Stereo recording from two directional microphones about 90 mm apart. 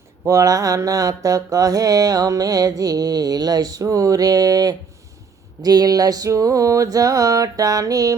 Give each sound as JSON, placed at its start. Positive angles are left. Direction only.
{"t": 0.3, "sound": "mantra", "side_deg": -35}
{"t": 5.6, "sound": "music", "side_deg": -45}